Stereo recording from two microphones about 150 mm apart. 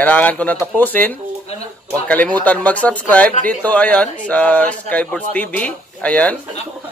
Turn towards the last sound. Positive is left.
turn(degrees=10)  # may be behind; listen again after turning